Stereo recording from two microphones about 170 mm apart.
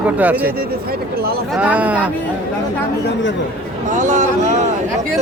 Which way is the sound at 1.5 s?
5° right (ahead or behind).